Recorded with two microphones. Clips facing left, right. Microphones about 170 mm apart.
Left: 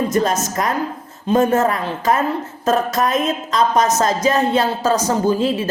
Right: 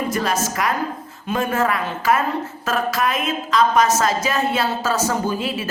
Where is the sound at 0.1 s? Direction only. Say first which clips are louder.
Left 4 dB; 20° left (ahead or behind).